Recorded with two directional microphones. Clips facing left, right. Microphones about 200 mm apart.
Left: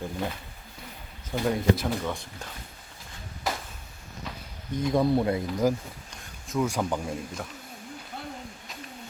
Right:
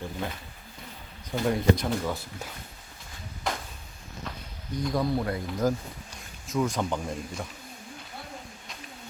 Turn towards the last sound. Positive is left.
turn(degrees=5)  # may be behind; listen again after turning